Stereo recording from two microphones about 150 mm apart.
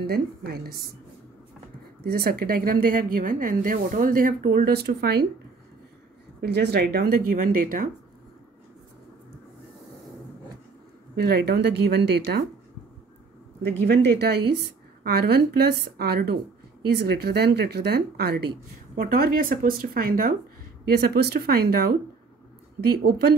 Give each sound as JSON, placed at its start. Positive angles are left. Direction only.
{"t": 0.0, "sound": "a woman's voice", "side_deg": -90}
{"t": 2.0, "sound": "a woman's voice", "side_deg": -90}
{"t": 6.4, "sound": "speech", "side_deg": -90}
{"t": 11.1, "sound": "a woman's voice", "side_deg": -90}
{"t": 13.8, "sound": "a woman's voice", "side_deg": -90}
{"t": 18.9, "sound": "a woman's voice", "side_deg": -80}
{"t": 20.8, "sound": "a woman's voice", "side_deg": -90}